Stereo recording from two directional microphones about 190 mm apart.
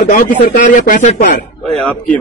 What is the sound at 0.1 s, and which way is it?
A man's voice, 45° left (ahead or behind).